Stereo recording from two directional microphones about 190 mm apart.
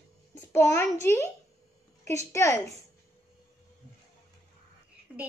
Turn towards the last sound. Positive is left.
turn(degrees=-10)  # may be behind; listen again after turning